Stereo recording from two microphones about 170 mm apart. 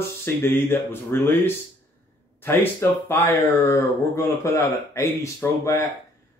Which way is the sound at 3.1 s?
15° left (ahead or behind).